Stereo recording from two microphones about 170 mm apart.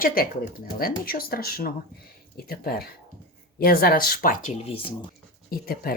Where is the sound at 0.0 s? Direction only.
60° left (ahead or behind).